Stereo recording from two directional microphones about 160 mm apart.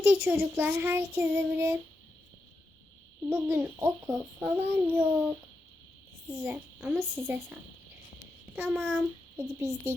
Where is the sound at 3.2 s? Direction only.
15° right (ahead or behind).